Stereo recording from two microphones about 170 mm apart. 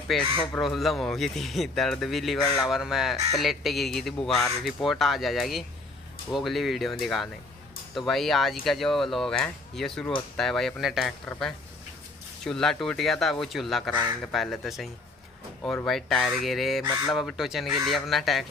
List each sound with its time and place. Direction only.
0.1 s speech: 5° left (ahead or behind)